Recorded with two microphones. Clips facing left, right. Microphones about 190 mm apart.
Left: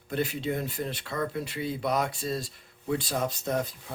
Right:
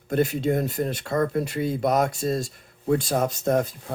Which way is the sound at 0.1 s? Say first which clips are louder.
Right 7 dB; 45° right (ahead or behind).